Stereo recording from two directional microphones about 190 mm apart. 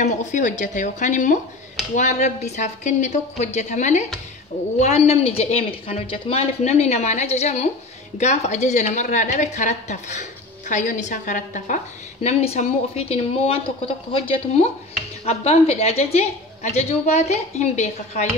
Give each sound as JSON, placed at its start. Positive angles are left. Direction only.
{"t": 0.0, "sound": "a woman's voice", "side_deg": 40}